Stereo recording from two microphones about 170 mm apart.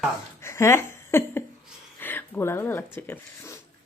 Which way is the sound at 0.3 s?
15° left (ahead or behind).